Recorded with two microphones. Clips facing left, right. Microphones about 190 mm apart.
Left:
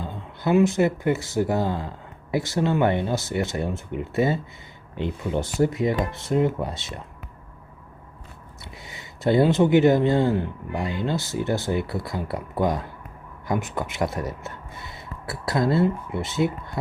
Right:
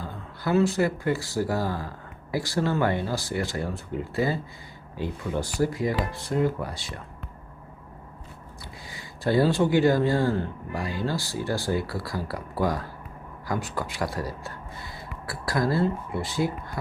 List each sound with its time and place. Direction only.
0.0 s speech: 20° left (ahead or behind)
8.9 s speech: 20° left (ahead or behind)